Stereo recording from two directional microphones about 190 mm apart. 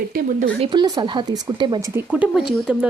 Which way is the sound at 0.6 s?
20° right (ahead or behind).